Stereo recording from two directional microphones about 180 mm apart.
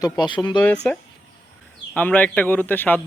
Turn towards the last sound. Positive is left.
turn(degrees=10)  # may be behind; listen again after turning